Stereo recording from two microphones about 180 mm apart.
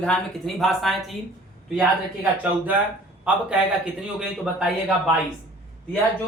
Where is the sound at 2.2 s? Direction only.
10° right (ahead or behind).